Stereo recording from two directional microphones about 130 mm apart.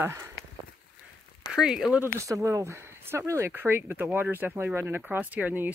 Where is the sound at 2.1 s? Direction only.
25° right (ahead or behind).